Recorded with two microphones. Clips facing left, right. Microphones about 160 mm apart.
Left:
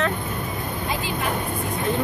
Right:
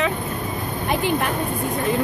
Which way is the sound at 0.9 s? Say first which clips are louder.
Right 8 dB; 65° right (ahead or behind).